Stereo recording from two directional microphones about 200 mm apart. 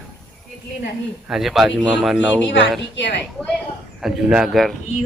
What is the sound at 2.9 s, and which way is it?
Speech, 60° left (ahead or behind).